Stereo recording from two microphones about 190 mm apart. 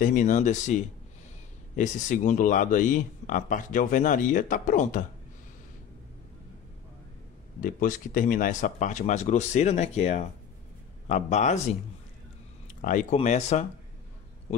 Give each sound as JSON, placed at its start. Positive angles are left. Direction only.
{"t": 0.0, "sound": "speech", "side_deg": 45}
{"t": 7.6, "sound": "speech", "side_deg": 45}
{"t": 12.6, "sound": "speech", "side_deg": 40}